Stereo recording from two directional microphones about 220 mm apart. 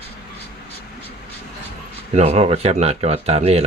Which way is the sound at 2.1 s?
30° right (ahead or behind).